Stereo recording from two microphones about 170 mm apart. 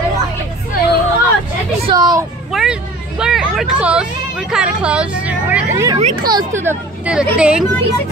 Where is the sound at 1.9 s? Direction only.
25° right (ahead or behind).